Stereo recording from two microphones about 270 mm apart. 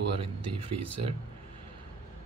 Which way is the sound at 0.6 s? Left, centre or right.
Centre.